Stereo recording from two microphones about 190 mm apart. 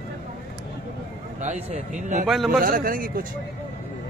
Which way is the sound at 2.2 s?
Centre (ahead or behind).